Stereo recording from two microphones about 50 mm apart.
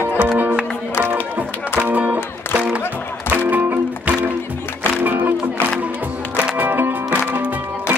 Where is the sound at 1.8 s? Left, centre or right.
Right.